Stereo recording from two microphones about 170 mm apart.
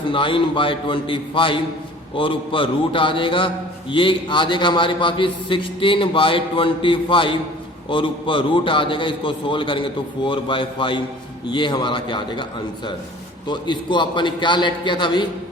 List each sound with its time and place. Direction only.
0.1 s a man's voice: 30° left (ahead or behind)